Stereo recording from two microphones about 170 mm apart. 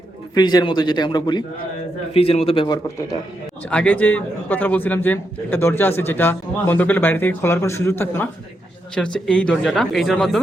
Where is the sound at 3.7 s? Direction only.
10° left (ahead or behind).